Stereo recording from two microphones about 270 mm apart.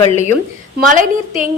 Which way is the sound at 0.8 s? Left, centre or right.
Right.